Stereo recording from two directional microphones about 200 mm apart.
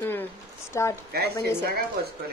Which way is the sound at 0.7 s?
15° left (ahead or behind).